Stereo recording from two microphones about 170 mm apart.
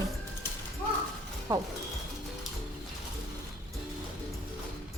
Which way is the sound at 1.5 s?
25° right (ahead or behind).